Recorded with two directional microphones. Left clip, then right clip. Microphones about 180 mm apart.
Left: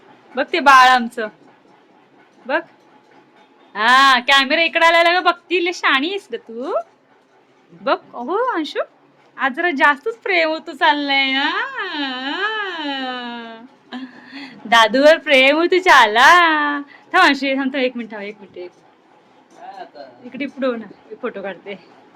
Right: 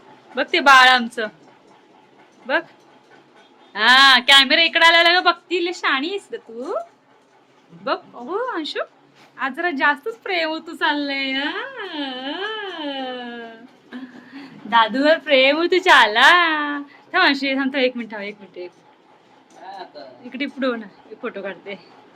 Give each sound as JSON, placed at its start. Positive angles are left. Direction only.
{"t": 0.3, "sound": "speech", "side_deg": 10}
{"t": 3.7, "sound": "speech", "side_deg": 15}
{"t": 7.9, "sound": "a woman's voice", "side_deg": 25}
{"t": 20.2, "sound": "speech", "side_deg": 0}